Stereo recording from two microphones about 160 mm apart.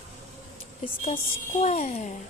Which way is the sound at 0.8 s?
45° left (ahead or behind).